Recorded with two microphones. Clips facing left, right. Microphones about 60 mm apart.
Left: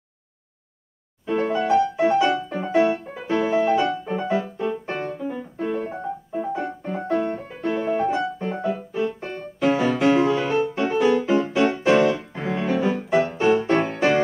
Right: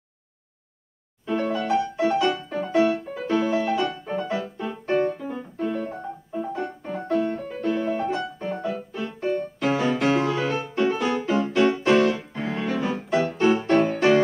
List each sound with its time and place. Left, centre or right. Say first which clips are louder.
1.2 s music: left 3 dB; centre
2.9 s music: even; centre